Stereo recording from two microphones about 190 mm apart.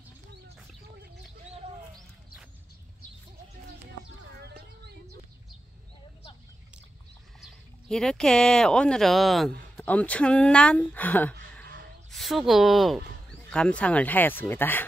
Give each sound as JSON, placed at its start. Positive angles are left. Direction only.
{"t": 4.5, "sound": "a sound", "side_deg": -60}
{"t": 7.3, "sound": "speech", "side_deg": 0}
{"t": 11.6, "sound": "snort", "side_deg": -55}
{"t": 12.1, "sound": "speech", "side_deg": 0}